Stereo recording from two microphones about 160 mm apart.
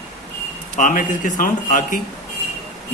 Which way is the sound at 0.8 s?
55° left (ahead or behind).